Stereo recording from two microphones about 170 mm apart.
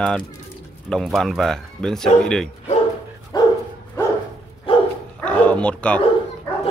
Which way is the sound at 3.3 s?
25° left (ahead or behind).